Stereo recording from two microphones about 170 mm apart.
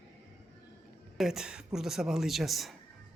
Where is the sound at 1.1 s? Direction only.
Centre (ahead or behind).